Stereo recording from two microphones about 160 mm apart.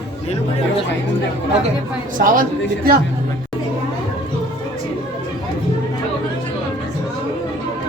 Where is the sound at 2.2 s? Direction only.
60° right (ahead or behind).